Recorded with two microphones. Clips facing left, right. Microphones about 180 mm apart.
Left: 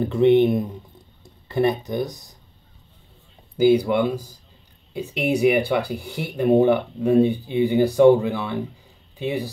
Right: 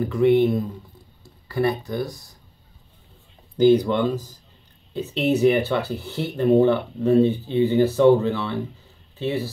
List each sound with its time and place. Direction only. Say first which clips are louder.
0.0 s speech: left 2 dB; 25° left (ahead or behind)
3.5 s speech: even; 10° left (ahead or behind)